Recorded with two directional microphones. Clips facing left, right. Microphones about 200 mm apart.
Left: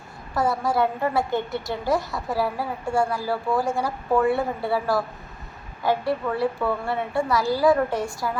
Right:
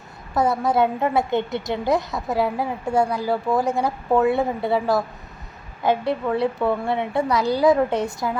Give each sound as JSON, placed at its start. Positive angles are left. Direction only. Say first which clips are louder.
{"t": 0.3, "sound": "a woman's voice", "louder": "right 3 dB", "side_deg": -20}